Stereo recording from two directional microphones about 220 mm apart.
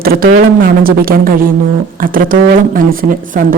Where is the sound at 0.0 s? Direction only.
45° right (ahead or behind).